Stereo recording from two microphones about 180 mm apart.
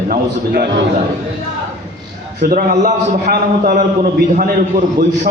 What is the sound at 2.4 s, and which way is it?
A man's voice, 50° right (ahead or behind).